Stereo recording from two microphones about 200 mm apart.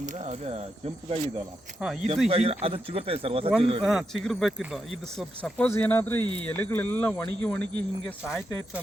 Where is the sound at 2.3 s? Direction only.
30° right (ahead or behind).